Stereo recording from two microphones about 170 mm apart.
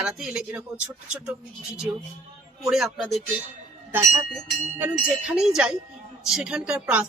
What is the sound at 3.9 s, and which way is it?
Speech, 20° right (ahead or behind).